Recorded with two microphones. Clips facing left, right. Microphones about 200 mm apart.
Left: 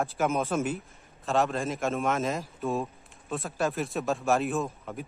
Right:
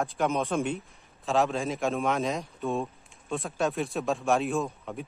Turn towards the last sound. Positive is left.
turn(degrees=0)  # may be behind; listen again after turning